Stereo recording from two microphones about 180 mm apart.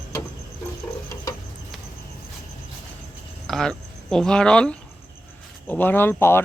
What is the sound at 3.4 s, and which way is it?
Speech, centre (ahead or behind).